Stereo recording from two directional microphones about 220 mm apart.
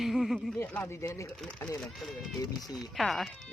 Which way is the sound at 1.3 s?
5° left (ahead or behind).